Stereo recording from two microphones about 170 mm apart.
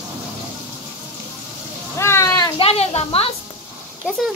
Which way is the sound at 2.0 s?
15° left (ahead or behind).